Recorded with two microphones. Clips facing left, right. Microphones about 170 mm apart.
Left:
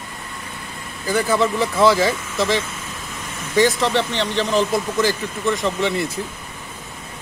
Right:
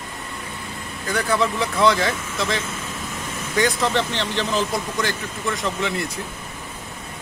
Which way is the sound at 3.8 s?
15° left (ahead or behind).